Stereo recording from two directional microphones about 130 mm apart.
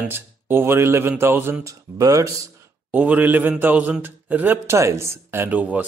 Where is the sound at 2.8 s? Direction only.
10° right (ahead or behind).